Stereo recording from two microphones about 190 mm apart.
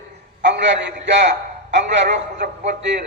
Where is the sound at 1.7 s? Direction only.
65° right (ahead or behind).